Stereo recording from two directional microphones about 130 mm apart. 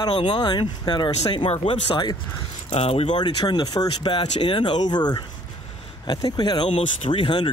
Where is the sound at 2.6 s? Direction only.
50° left (ahead or behind); by 6.6 s 30° left (ahead or behind).